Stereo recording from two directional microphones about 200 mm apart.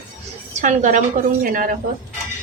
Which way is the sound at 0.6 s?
40° right (ahead or behind).